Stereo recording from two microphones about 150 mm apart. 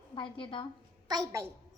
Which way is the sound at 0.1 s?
35° left (ahead or behind).